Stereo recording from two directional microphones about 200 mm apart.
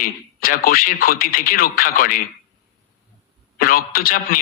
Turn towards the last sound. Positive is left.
turn(degrees=45)  # may be behind; listen again after turning